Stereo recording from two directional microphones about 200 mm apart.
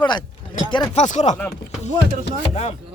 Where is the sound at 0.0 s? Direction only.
20° left (ahead or behind).